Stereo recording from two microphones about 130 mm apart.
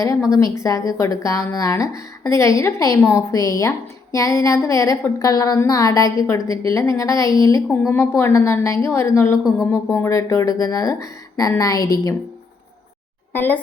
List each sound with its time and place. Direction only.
0.3 s speech: 25° left (ahead or behind)
13.3 s speech: 15° left (ahead or behind)